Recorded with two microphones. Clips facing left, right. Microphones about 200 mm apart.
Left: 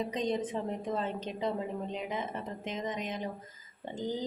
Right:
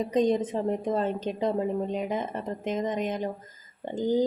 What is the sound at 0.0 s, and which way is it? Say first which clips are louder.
Speech: right 8 dB; 45° right (ahead or behind).